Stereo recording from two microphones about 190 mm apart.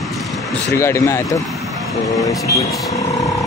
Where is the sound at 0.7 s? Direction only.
15° left (ahead or behind).